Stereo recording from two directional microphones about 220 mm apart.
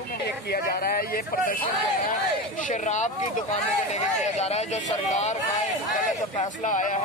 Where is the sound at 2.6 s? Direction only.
35° left (ahead or behind).